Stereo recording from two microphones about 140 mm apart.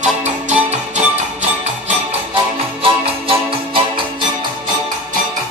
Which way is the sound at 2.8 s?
40° right (ahead or behind).